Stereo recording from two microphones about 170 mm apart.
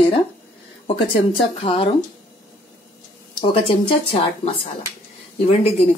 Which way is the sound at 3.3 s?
30° left (ahead or behind).